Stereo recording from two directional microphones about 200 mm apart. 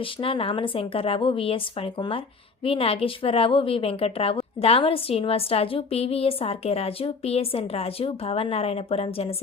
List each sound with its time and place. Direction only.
0.0 s a woman's voice: 25° left (ahead or behind)